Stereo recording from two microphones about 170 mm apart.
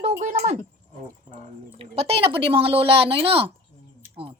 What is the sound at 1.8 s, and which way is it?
Speech, 35° right (ahead or behind).